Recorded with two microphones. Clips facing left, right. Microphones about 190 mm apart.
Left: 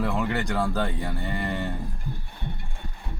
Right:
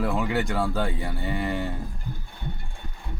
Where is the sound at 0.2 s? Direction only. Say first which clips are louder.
Right 1 dB; 5° right (ahead or behind).